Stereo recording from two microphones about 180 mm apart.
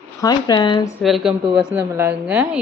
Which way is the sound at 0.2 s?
20° left (ahead or behind).